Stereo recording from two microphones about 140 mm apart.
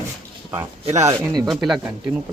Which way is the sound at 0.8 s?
50° right (ahead or behind).